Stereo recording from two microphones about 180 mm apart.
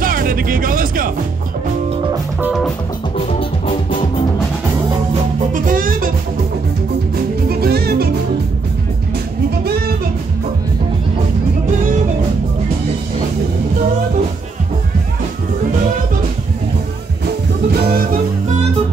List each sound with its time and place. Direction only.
0.0 s speech: 50° right (ahead or behind)
2.4 s music: centre (ahead or behind)
5.5 s music: 50° right (ahead or behind)
7.4 s music: 60° right (ahead or behind)
9.7 s music: 60° right (ahead or behind)